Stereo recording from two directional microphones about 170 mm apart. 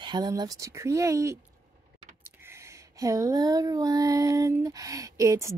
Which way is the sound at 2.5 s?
15° right (ahead or behind).